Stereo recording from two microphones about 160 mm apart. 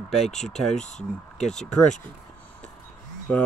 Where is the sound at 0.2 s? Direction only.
45° left (ahead or behind).